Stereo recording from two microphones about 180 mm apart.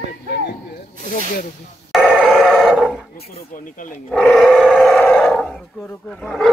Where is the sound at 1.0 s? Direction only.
45° left (ahead or behind).